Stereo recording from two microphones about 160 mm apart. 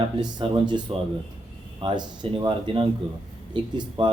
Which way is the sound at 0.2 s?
30° right (ahead or behind).